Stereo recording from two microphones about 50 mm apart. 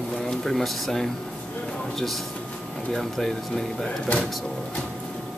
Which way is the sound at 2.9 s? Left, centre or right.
Centre.